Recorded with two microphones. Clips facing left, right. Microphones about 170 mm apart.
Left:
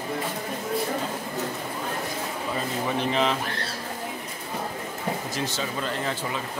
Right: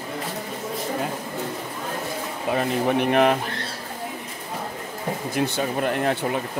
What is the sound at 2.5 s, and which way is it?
Speech, 60° right (ahead or behind).